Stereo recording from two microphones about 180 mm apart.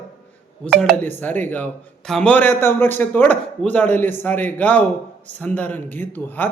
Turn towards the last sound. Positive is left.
turn(degrees=10)  # may be behind; listen again after turning